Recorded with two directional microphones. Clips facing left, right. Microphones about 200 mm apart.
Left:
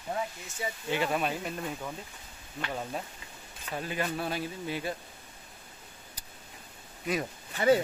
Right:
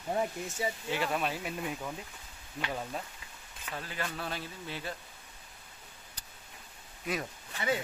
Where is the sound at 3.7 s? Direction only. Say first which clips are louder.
Left 6 dB; 15° left (ahead or behind).